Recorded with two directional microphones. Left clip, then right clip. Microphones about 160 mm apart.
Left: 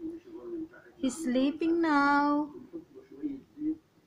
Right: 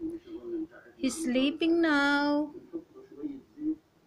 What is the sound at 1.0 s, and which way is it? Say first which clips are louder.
Speech: right 1 dB; 15° left (ahead or behind).